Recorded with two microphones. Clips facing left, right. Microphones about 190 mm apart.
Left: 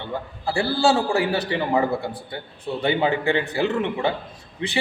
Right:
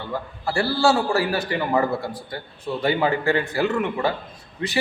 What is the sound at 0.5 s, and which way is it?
A man's voice, 20° left (ahead or behind).